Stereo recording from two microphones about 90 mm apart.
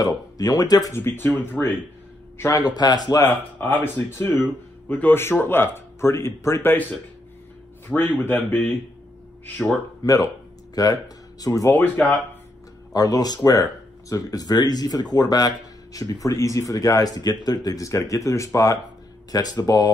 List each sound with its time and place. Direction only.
0.0 s speech: 45° left (ahead or behind)
0.9 s speech: 25° left (ahead or behind)
2.5 s speech: 45° left (ahead or behind)
3.3 s speech: 25° left (ahead or behind)
7.9 s speech: 20° left (ahead or behind)
10.0 s speech: 40° left (ahead or behind)
12.9 s speech: 45° left (ahead or behind)
17.6 s speech: 40° left (ahead or behind)